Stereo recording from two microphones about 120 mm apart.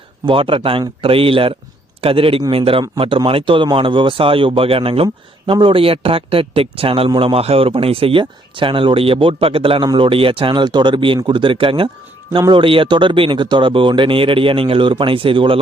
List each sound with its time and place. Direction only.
0.3 s a man's voice: 50° right (ahead or behind)